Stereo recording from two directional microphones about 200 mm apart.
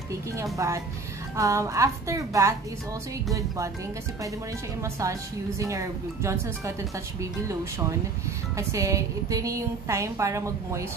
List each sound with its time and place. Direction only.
0.4 s a woman's voice: 15° right (ahead or behind)
5.0 s a woman's voice: 15° right (ahead or behind)
8.5 s a woman's voice: 15° right (ahead or behind)